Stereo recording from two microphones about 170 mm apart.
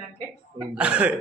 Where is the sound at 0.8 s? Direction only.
5° right (ahead or behind).